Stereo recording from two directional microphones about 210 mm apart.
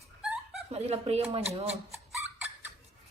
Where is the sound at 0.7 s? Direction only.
30° right (ahead or behind).